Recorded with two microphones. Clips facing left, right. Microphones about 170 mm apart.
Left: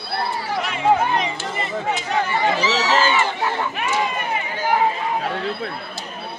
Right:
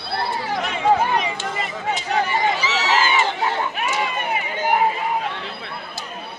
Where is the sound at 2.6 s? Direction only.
35° left (ahead or behind).